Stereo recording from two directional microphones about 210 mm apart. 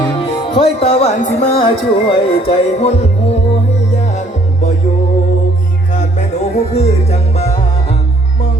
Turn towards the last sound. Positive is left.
turn(degrees=30)  # may be behind; listen again after turning